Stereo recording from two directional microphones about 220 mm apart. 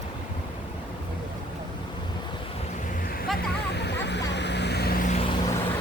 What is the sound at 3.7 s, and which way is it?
Vehicle, 50° left (ahead or behind).